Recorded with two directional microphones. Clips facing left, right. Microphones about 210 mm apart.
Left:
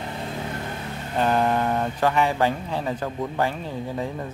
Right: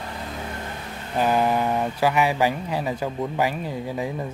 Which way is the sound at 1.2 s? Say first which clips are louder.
Right 1 dB; 5° right (ahead or behind).